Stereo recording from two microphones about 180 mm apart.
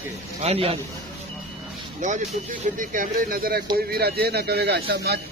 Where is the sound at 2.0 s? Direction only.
40° right (ahead or behind).